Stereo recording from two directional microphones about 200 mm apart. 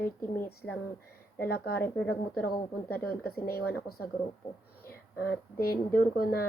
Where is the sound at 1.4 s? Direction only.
50° left (ahead or behind).